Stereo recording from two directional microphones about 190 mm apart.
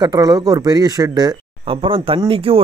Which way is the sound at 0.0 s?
20° right (ahead or behind).